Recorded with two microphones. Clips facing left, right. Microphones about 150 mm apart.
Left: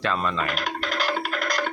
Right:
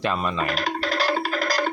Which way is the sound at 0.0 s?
15° right (ahead or behind).